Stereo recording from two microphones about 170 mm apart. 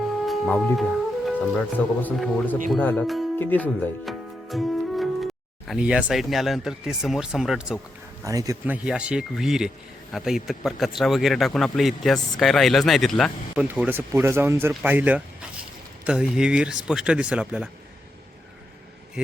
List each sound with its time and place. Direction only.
0.3 s music: 5° left (ahead or behind)
2.0 s a man's voice: 10° left (ahead or behind)
4.0 s speech: centre (ahead or behind)
8.2 s speech: 20° right (ahead or behind)
8.7 s a man's voice: 5° right (ahead or behind)
13.7 s a man's voice: 10° right (ahead or behind)